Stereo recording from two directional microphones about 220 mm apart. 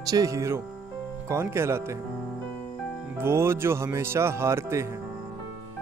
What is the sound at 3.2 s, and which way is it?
Speech, 10° right (ahead or behind).